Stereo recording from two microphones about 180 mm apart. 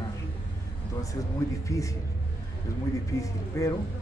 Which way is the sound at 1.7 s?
20° left (ahead or behind).